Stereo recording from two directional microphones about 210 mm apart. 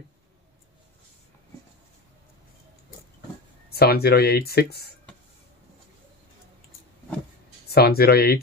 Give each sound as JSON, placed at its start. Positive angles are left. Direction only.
{"t": 3.7, "sound": "speech", "side_deg": 50}
{"t": 7.7, "sound": "speech", "side_deg": 45}